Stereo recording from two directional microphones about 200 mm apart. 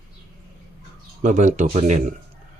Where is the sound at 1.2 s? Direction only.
40° right (ahead or behind).